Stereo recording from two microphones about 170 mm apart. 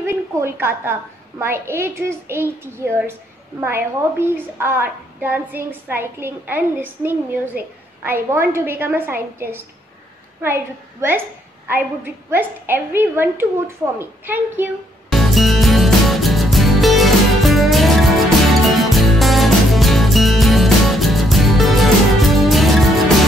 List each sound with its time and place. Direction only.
0.0 s a woman's voice: 15° right (ahead or behind)
15.0 s music: centre (ahead or behind)